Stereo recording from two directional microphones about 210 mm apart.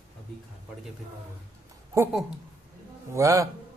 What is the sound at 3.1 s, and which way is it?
Speech, 15° right (ahead or behind).